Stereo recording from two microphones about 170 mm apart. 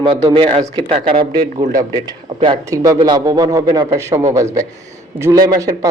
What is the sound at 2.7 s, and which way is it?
A man's voice, 20° right (ahead or behind).